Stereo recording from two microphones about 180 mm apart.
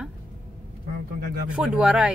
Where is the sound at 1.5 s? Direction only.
5° right (ahead or behind).